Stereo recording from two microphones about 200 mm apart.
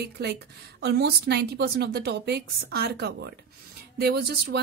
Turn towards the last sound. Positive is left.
turn(degrees=-55)  # may be behind; listen again after turning